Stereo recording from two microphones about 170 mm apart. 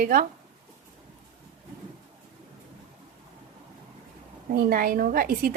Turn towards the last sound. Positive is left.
turn(degrees=-60)  # may be behind; listen again after turning